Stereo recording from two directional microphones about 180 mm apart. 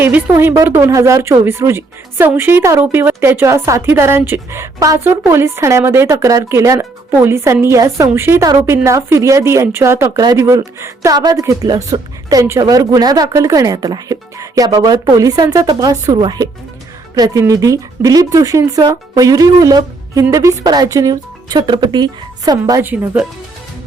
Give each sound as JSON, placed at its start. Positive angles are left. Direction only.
{"t": 0.0, "sound": "speech", "side_deg": -10}